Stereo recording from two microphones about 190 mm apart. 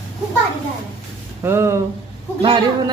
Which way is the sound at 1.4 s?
15° right (ahead or behind).